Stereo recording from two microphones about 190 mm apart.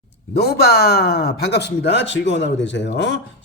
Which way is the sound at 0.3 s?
55° left (ahead or behind).